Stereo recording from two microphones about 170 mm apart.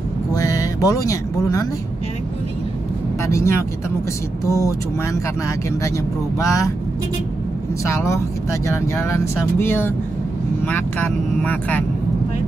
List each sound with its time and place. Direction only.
0.3 s a sound: 20° left (ahead or behind)
3.3 s speech: 15° left (ahead or behind)
6.4 s speech: 20° left (ahead or behind)
7.8 s speech: 15° left (ahead or behind)